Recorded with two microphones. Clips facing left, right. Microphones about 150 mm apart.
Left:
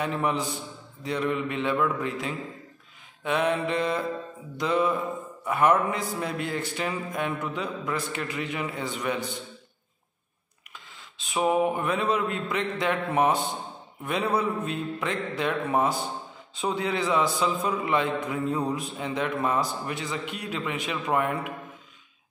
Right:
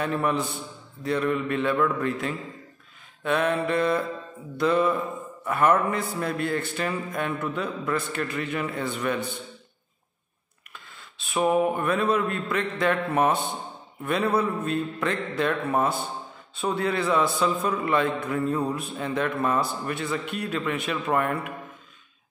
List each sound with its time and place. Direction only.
0.0 s a man's voice: 15° left (ahead or behind)
3.3 s a man's voice: 15° left (ahead or behind)
11.2 s a man's voice: 10° left (ahead or behind)